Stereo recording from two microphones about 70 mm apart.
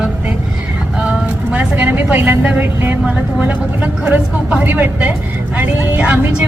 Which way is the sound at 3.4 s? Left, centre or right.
Right.